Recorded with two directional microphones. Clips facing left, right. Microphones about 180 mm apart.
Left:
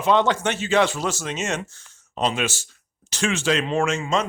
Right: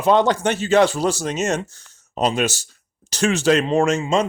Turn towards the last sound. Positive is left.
turn(degrees=-40)  # may be behind; listen again after turning